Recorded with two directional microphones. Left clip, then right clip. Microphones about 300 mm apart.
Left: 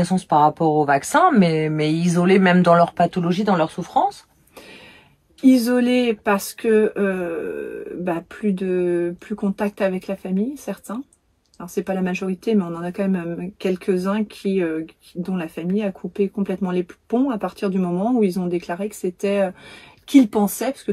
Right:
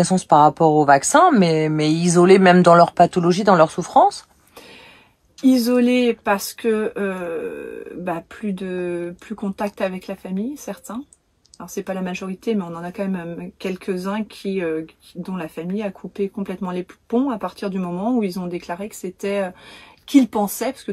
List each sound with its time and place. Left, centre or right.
0.0 s speech: centre
5.7 s speech: centre